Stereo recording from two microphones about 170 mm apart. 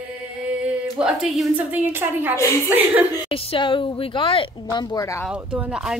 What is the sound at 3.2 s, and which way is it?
Speech, 30° left (ahead or behind).